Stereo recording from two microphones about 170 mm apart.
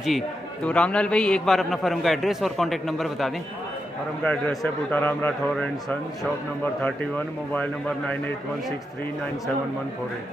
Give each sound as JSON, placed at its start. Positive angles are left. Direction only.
{"t": 0.7, "sound": "a man's voice", "side_deg": 5}